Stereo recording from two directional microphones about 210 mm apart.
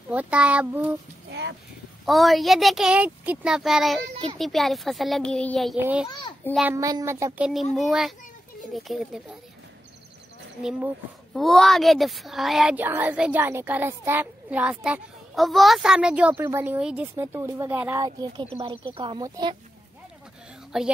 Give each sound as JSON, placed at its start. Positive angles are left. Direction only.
{"t": 0.1, "sound": "speech", "side_deg": -5}
{"t": 2.0, "sound": "a child's voice", "side_deg": 0}
{"t": 10.6, "sound": "a child's voice", "side_deg": -5}
{"t": 20.7, "sound": "a child's voice", "side_deg": 0}